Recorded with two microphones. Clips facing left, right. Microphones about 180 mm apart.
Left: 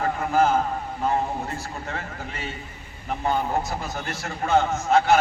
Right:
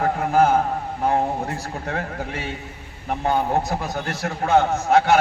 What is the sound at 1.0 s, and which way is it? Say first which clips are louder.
A man's voice: right 4 dB; 60° right (ahead or behind).